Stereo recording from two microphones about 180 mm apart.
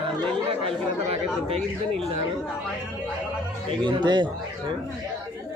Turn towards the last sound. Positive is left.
turn(degrees=-25)  # may be behind; listen again after turning